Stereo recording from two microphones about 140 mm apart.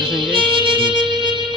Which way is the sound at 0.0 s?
35° right (ahead or behind).